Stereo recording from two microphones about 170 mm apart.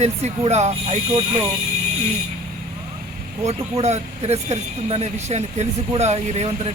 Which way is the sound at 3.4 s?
40° right (ahead or behind).